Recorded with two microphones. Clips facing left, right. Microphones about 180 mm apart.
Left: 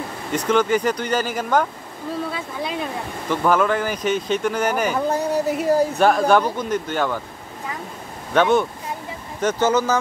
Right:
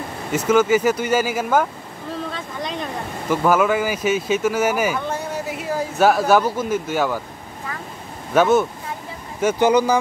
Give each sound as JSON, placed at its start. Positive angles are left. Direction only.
{"t": 0.3, "sound": "speech", "side_deg": -5}
{"t": 2.3, "sound": "speech", "side_deg": 5}
{"t": 3.3, "sound": "speech", "side_deg": -5}
{"t": 4.9, "sound": "a sound", "side_deg": 40}
{"t": 5.9, "sound": "speech", "side_deg": -5}
{"t": 8.3, "sound": "speech", "side_deg": -5}